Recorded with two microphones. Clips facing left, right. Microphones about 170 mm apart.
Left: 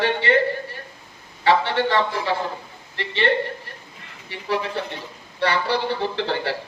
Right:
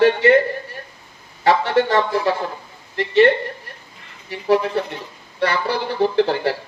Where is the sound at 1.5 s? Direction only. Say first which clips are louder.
Right 3 dB; 45° right (ahead or behind).